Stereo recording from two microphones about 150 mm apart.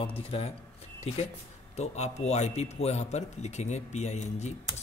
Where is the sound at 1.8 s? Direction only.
45° left (ahead or behind).